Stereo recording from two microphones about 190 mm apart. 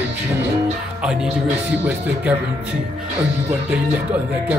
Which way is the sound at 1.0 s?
5° right (ahead or behind).